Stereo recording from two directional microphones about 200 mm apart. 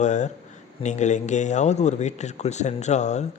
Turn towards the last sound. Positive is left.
turn(degrees=35)  # may be behind; listen again after turning